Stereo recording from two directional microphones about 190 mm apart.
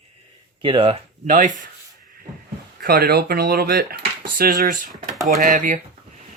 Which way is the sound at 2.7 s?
55° right (ahead or behind).